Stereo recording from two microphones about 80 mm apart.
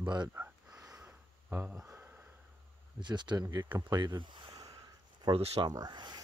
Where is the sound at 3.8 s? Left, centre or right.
Right.